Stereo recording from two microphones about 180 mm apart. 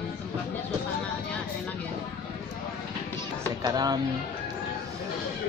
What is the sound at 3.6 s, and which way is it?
Speech, 20° right (ahead or behind).